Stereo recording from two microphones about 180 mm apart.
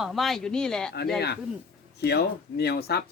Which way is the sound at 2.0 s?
65° left (ahead or behind).